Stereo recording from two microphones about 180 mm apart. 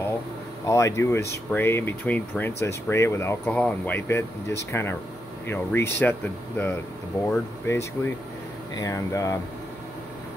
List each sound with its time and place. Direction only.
0.7 s speech: 15° left (ahead or behind)
7.2 s speech: 10° left (ahead or behind)